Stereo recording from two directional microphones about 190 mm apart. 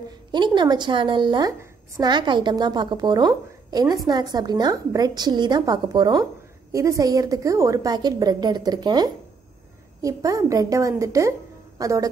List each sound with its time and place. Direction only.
0.3 s a woman's voice: 25° right (ahead or behind)